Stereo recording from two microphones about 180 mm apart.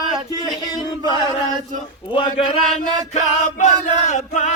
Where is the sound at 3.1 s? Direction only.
45° left (ahead or behind).